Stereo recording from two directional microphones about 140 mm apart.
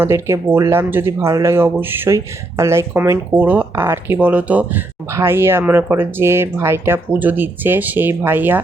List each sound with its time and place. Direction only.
0.0 s speech: 15° right (ahead or behind)